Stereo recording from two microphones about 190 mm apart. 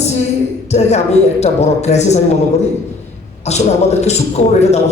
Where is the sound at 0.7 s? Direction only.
35° left (ahead or behind).